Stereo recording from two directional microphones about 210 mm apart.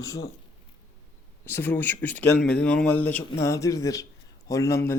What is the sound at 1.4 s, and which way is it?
Speech, 10° left (ahead or behind).